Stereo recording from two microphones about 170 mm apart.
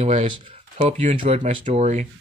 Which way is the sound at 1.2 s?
45° right (ahead or behind).